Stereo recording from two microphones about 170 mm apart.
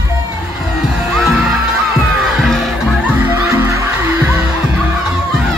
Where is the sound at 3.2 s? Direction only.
15° right (ahead or behind).